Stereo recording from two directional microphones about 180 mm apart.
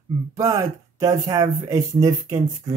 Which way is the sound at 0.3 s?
20° right (ahead or behind).